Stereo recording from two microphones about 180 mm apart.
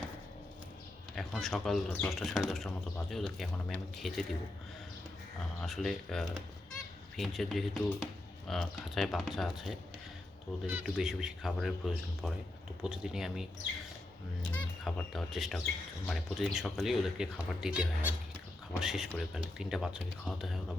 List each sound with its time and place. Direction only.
1.1 s a man's voice: centre (ahead or behind)
5.5 s speech: centre (ahead or behind)
12.8 s speech: 5° right (ahead or behind)
14.5 s speech: 5° left (ahead or behind)